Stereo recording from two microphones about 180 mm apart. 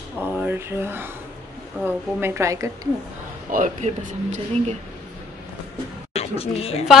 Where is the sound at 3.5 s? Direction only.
45° right (ahead or behind).